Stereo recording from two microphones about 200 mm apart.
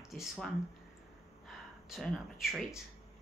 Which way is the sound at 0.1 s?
Centre (ahead or behind).